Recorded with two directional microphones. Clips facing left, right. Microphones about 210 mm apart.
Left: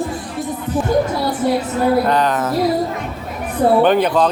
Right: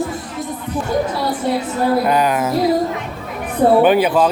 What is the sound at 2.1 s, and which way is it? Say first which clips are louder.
Speech: right 1 dB; 10° right (ahead or behind).